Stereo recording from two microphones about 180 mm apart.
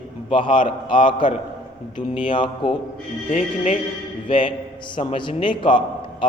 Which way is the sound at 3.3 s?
45° left (ahead or behind).